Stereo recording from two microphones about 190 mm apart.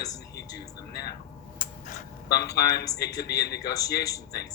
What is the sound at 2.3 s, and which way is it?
Speech, 60° left (ahead or behind).